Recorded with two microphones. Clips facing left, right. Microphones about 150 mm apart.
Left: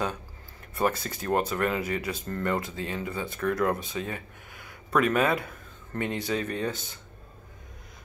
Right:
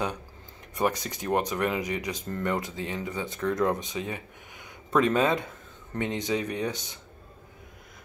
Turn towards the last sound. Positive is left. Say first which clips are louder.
# even
turn(degrees=-15)  # may be behind; listen again after turning